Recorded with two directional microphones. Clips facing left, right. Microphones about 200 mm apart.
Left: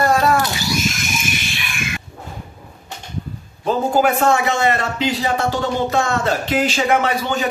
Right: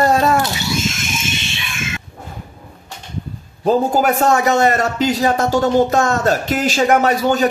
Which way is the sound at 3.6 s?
40° right (ahead or behind).